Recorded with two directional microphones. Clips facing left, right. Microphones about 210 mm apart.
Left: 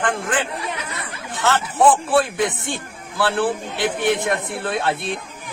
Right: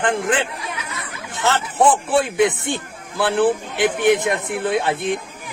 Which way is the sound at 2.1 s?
20° right (ahead or behind).